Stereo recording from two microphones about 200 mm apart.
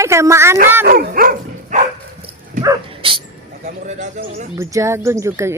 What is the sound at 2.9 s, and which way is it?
Speech, 25° right (ahead or behind).